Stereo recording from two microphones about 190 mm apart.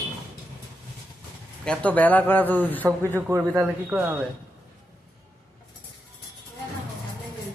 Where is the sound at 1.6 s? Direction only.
5° left (ahead or behind).